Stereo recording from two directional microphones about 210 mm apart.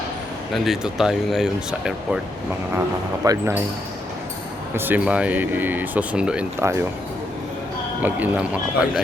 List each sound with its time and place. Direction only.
0.5 s speech: centre (ahead or behind)
3.2 s speech: 15° right (ahead or behind)
4.7 s speech: 10° right (ahead or behind)
8.0 s speech: 5° right (ahead or behind)